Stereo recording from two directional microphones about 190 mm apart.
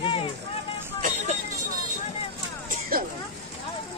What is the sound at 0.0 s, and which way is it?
Vehicle, 30° left (ahead or behind).